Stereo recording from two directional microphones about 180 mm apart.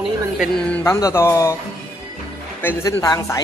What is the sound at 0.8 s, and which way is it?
Speech, 15° left (ahead or behind).